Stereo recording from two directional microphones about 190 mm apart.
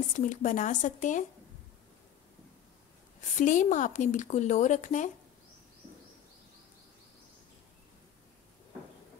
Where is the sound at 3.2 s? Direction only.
40° left (ahead or behind).